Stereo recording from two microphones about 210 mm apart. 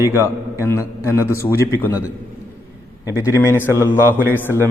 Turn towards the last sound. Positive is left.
turn(degrees=10)  # may be behind; listen again after turning